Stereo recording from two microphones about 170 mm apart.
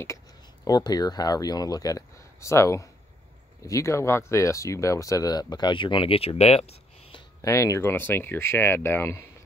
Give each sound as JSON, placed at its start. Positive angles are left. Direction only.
{"t": 0.7, "sound": "speech", "side_deg": 25}
{"t": 7.4, "sound": "speech", "side_deg": 20}